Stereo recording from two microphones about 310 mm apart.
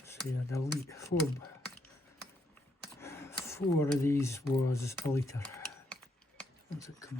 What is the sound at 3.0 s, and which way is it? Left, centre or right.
Speech, centre.